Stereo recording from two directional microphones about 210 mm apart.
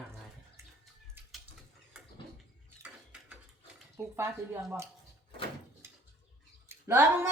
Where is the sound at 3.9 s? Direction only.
15° right (ahead or behind).